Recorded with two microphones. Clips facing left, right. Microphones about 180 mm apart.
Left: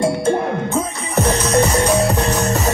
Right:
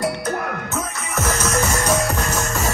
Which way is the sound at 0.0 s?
25° left (ahead or behind).